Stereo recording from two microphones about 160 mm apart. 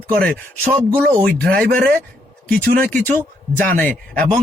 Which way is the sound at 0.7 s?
5° left (ahead or behind).